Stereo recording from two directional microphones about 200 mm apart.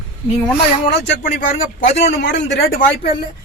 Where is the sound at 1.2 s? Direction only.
40° left (ahead or behind).